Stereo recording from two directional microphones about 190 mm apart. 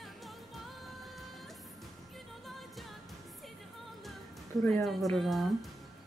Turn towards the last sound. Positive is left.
turn(degrees=0)  # may be behind; listen again after turning